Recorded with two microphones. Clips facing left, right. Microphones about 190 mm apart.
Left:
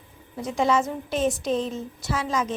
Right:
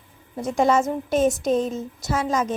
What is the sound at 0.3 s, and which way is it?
A woman's voice, 50° right (ahead or behind).